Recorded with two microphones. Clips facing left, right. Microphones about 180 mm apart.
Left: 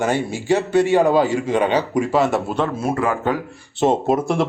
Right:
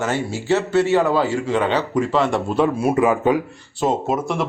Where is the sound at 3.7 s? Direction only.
30° left (ahead or behind).